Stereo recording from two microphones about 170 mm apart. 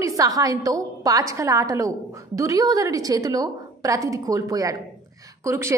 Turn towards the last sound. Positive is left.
turn(degrees=-15)  # may be behind; listen again after turning